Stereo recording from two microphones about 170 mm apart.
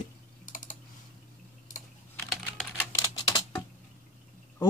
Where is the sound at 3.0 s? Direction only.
25° left (ahead or behind).